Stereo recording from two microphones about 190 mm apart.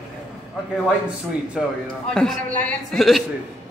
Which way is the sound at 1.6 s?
Centre (ahead or behind).